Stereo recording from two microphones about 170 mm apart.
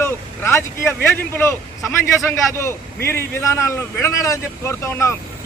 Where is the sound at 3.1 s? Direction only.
15° left (ahead or behind).